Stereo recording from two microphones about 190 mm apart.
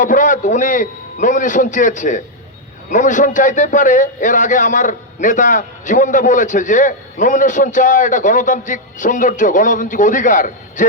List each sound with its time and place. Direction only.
0.0 s a man's voice: 45° left (ahead or behind)